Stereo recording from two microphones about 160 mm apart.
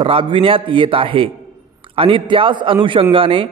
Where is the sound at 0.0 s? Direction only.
35° right (ahead or behind).